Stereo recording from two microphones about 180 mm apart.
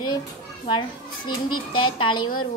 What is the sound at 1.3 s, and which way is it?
Speech, 30° left (ahead or behind).